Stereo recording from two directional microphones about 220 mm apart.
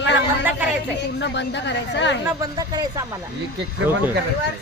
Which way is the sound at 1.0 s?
50° left (ahead or behind).